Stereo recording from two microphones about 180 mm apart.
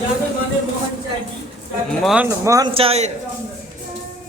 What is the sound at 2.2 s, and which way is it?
Speech, 15° right (ahead or behind).